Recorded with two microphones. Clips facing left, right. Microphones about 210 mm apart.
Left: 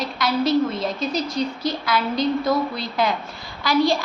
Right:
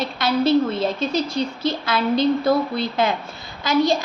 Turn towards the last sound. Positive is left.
turn(degrees=-20)  # may be behind; listen again after turning